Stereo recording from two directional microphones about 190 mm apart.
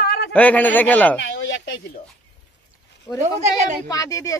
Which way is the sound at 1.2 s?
70° left (ahead or behind).